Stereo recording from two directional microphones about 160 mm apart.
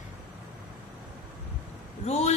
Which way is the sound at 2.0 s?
45° left (ahead or behind).